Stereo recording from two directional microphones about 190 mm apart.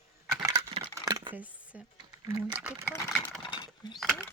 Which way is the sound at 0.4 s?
20° right (ahead or behind).